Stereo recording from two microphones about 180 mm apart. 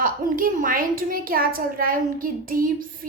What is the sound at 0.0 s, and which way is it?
A woman's voice, 50° right (ahead or behind).